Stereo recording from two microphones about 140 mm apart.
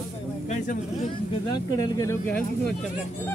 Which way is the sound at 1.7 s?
25° left (ahead or behind).